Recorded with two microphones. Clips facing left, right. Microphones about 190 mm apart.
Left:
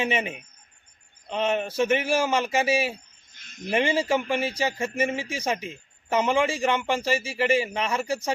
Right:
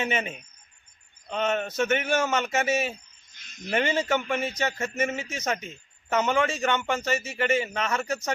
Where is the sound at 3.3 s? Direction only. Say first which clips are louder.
Left 4 dB; 55° left (ahead or behind).